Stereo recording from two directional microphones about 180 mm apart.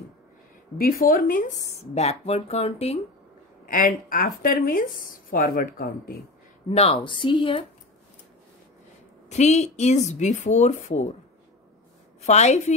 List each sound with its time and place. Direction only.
0.7 s a woman's voice: 55° left (ahead or behind)
2.0 s speech: 35° left (ahead or behind)
3.6 s a woman's voice: 50° left (ahead or behind)
6.7 s speech: 35° left (ahead or behind)
7.1 s a woman's voice: 25° left (ahead or behind)
9.3 s speech: 40° left (ahead or behind)
12.2 s speech: 40° left (ahead or behind)